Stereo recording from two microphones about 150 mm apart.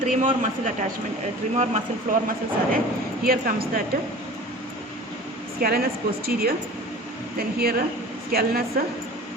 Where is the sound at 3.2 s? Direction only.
80° right.